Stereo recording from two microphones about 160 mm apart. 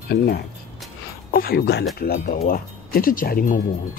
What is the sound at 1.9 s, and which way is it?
Speech, 70° left (ahead or behind).